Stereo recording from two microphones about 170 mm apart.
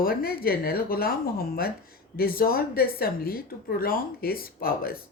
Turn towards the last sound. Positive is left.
turn(degrees=60)  # may be behind; listen again after turning